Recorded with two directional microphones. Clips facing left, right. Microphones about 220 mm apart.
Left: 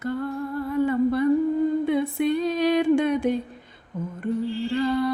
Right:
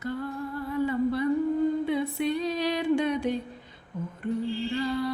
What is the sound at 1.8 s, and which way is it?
Female singing, 50° left (ahead or behind).